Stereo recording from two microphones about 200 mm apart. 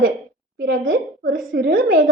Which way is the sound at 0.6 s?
70° right (ahead or behind).